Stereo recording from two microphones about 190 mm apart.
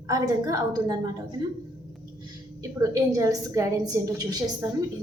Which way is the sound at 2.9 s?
15° right (ahead or behind).